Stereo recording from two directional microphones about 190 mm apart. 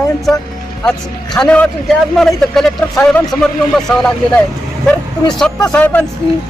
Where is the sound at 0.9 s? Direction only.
5° left (ahead or behind).